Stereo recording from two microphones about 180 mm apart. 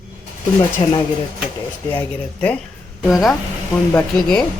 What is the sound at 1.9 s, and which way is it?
Speech, 10° left (ahead or behind).